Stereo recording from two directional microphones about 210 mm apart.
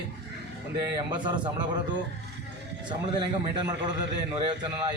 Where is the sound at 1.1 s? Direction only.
20° right (ahead or behind).